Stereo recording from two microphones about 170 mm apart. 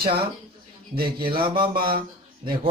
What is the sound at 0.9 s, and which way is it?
Speech, 60° right (ahead or behind).